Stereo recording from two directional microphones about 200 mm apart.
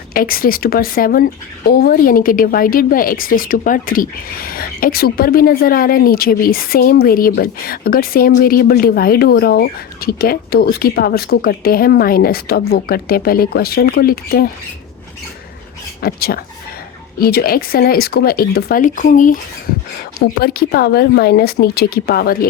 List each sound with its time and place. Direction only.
0.1 s speech: 45° left (ahead or behind)
16.0 s speech: 50° left (ahead or behind)
20.4 s speech: 50° left (ahead or behind)